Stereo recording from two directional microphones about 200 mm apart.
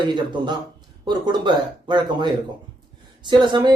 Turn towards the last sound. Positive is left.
turn(degrees=-20)  # may be behind; listen again after turning